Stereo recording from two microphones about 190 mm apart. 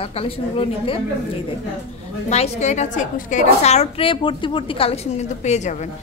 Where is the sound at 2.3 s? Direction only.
35° left (ahead or behind).